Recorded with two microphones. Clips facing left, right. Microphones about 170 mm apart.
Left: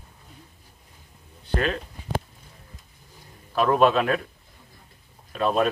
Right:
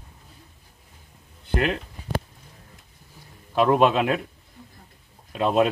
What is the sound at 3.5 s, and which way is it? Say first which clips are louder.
Speech: right 1 dB; 15° right (ahead or behind).